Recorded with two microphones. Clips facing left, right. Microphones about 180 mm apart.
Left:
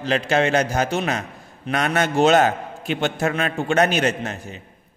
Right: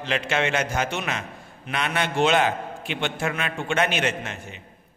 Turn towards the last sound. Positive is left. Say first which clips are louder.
# left 4 dB
turn(degrees=40)  # may be behind; listen again after turning